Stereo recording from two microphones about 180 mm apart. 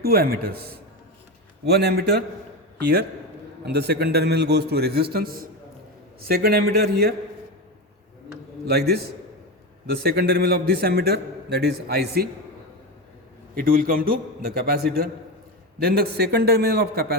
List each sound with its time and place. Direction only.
0.0 s a man's voice: 55° right (ahead or behind)
8.6 s a man's voice: 65° right (ahead or behind)
13.6 s a man's voice: 50° right (ahead or behind)